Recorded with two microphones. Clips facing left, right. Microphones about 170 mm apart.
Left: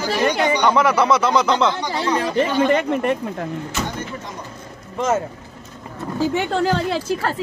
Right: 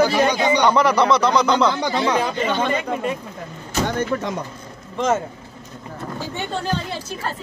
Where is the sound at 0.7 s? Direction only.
5° left (ahead or behind).